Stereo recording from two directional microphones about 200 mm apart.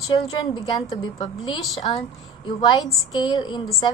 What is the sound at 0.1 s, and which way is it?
A woman's voice, 25° left (ahead or behind).